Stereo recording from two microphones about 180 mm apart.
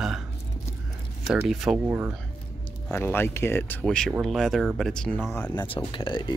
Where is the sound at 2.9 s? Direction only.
10° left (ahead or behind).